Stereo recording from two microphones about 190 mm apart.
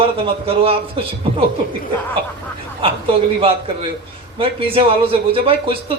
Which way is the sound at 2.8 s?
25° right (ahead or behind).